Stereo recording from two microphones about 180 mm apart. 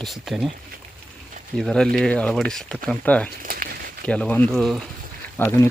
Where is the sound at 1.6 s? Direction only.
5° left (ahead or behind).